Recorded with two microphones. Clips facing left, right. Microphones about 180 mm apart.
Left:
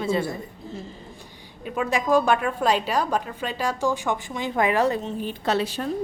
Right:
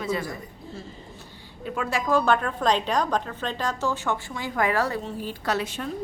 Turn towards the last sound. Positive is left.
turn(degrees=35)  # may be behind; listen again after turning